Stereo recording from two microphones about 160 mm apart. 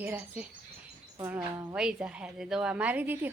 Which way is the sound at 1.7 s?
5° right (ahead or behind).